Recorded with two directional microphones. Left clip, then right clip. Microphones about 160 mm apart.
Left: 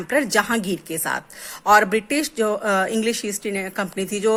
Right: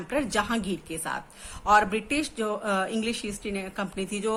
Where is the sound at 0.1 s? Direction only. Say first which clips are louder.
Left 8 dB; 45° left (ahead or behind).